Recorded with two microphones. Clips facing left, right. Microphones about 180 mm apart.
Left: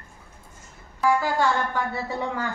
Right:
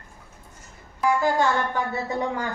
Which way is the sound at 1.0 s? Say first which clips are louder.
Right 1 dB; 20° right (ahead or behind).